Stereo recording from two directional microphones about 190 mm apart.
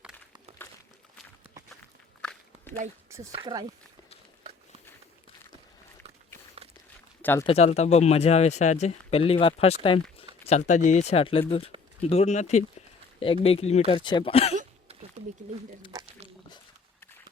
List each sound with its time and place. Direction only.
2.2 s walk: 5° left (ahead or behind)
3.3 s speech: 25° right (ahead or behind)
6.6 s walk: 30° right (ahead or behind)
7.2 s speech: 10° left (ahead or behind)
7.4 s speech: 35° left (ahead or behind)
14.5 s a sound: 35° right (ahead or behind)